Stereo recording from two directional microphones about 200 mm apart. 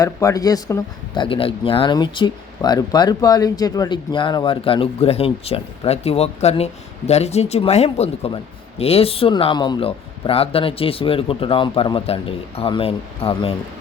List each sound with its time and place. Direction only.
0.0 s speech: 15° left (ahead or behind)